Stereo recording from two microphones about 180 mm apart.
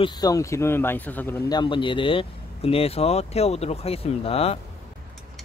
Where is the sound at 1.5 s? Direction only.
25° left (ahead or behind).